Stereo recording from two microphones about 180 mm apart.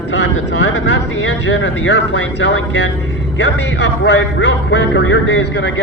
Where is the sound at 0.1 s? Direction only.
90° left.